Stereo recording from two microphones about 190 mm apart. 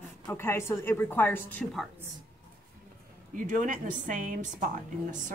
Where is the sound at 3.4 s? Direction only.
45° right (ahead or behind).